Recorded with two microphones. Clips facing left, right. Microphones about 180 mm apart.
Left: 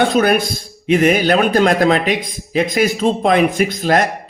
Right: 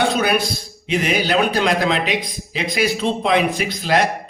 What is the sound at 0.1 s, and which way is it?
A man's voice, 50° left (ahead or behind).